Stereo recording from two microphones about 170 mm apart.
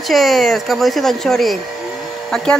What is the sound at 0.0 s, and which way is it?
Speech, centre (ahead or behind).